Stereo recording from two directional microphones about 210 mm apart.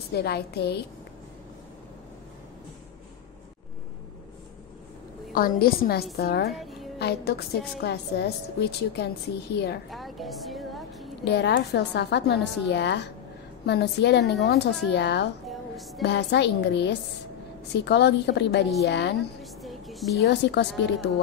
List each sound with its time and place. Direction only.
0.1 s a woman's voice: 50° left (ahead or behind)
5.3 s a woman's voice: 45° left (ahead or behind)
9.8 s a sound: centre (ahead or behind)
11.2 s a woman's voice: 55° left (ahead or behind)
15.4 s music: centre (ahead or behind)
16.0 s a woman's voice: 55° left (ahead or behind)
19.4 s a sound: centre (ahead or behind)
20.2 s a woman's voice: 55° left (ahead or behind)